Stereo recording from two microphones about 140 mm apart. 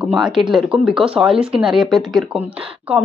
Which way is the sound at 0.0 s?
5° right (ahead or behind).